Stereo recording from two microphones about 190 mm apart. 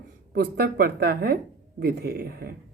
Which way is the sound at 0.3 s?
55° right (ahead or behind).